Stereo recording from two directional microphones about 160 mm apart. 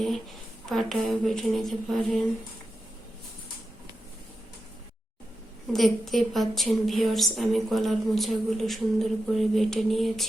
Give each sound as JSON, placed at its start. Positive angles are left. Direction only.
{"t": 0.6, "sound": "a woman's voice", "side_deg": 0}
{"t": 5.7, "sound": "a woman's voice", "side_deg": 0}